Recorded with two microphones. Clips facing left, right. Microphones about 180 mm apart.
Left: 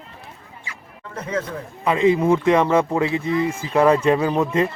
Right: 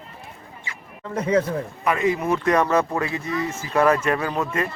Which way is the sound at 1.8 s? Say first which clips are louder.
Left 6 dB; 20° left (ahead or behind).